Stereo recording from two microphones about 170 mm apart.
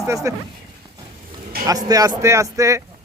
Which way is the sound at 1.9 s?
20° right (ahead or behind).